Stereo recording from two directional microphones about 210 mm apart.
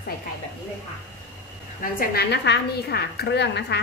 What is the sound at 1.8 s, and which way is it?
A woman's voice, 45° left (ahead or behind).